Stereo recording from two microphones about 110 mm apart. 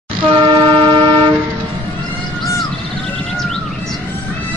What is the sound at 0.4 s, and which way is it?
Vehicle, 45° right (ahead or behind).